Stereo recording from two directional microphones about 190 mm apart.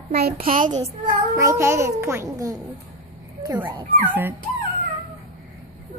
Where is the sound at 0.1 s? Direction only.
50° right (ahead or behind).